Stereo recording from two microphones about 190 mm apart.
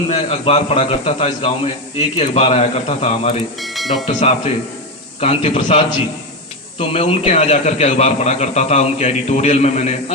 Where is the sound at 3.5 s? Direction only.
Centre (ahead or behind).